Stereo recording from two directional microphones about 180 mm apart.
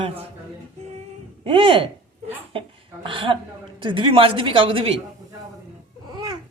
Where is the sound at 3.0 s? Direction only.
30° right (ahead or behind).